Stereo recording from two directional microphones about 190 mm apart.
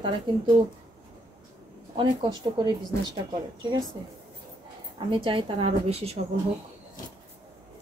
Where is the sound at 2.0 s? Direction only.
25° right (ahead or behind).